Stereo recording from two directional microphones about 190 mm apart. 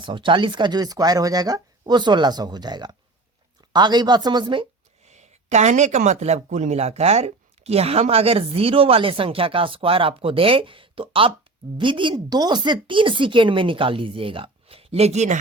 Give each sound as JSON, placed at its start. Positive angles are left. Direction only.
{"t": 0.0, "sound": "speech", "side_deg": -25}